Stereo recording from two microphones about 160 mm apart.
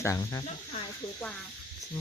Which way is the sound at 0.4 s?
40° left (ahead or behind).